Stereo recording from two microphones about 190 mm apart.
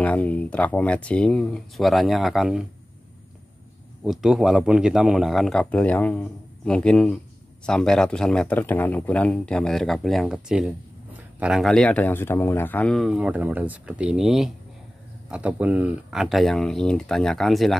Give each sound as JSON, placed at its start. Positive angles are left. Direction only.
{"t": 0.0, "sound": "speech", "side_deg": 5}
{"t": 4.0, "sound": "speech", "side_deg": 0}